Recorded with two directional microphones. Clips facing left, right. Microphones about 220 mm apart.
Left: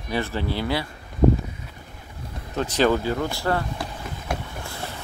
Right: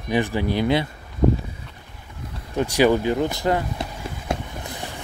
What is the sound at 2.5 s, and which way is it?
Run, 10° right (ahead or behind).